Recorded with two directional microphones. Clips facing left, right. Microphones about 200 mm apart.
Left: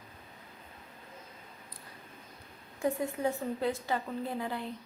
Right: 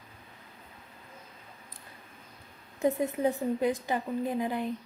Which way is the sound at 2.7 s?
20° right (ahead or behind).